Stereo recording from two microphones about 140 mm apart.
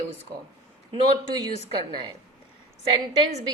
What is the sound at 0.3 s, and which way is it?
Speech, 30° right (ahead or behind).